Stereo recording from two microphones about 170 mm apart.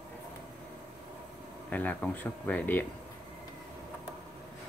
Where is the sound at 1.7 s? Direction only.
10° left (ahead or behind).